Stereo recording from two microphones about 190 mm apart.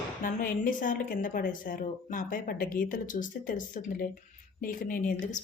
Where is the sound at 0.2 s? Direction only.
45° left (ahead or behind).